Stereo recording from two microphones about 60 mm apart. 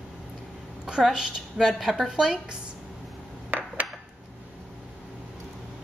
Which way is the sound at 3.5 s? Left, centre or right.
Right.